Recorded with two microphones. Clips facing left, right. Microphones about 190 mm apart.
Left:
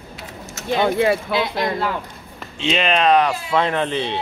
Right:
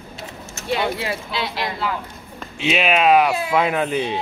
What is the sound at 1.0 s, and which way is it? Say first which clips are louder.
Speech: left 8 dB; 55° left (ahead or behind).